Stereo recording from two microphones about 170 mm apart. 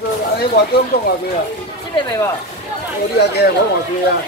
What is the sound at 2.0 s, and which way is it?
Speech, 20° left (ahead or behind).